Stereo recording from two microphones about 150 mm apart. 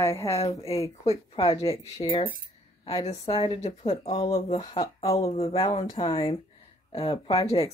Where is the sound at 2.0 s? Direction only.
30° left (ahead or behind).